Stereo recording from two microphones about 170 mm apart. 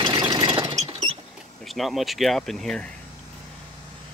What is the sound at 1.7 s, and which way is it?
Speech, centre (ahead or behind).